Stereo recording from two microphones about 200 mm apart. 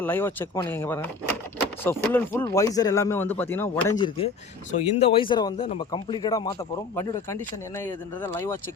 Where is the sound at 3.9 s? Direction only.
20° left (ahead or behind).